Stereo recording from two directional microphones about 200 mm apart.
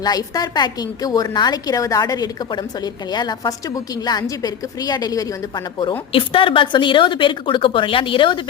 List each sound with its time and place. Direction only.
0.0 s a woman's voice: 20° left (ahead or behind)